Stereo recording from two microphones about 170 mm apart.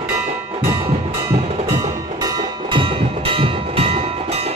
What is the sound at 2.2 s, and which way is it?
Train, 25° right (ahead or behind).